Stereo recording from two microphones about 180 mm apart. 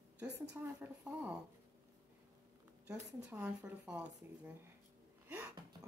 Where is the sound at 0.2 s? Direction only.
10° right (ahead or behind).